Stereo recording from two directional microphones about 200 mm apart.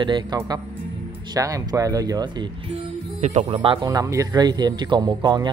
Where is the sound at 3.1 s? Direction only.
35° right (ahead or behind).